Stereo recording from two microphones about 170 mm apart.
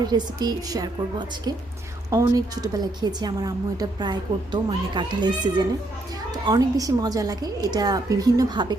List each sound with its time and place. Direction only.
0.0 s a woman's voice: 25° right (ahead or behind)
2.0 s a woman's voice: 20° right (ahead or behind)